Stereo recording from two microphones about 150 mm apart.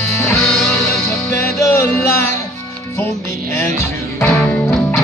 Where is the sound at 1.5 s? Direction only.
15° left (ahead or behind).